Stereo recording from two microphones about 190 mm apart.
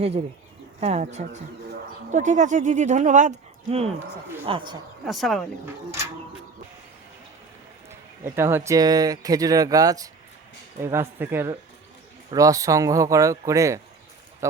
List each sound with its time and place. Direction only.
0.8 s speech: 35° right (ahead or behind)
4.4 s speech: 25° right (ahead or behind)
5.0 s speech: centre (ahead or behind)
7.9 s speech: 15° right (ahead or behind)